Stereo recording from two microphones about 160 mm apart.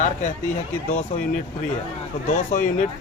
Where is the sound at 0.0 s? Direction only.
50° left (ahead or behind).